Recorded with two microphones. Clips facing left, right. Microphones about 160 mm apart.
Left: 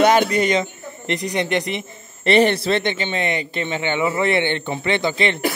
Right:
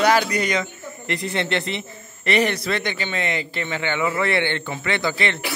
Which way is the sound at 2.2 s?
30° left (ahead or behind).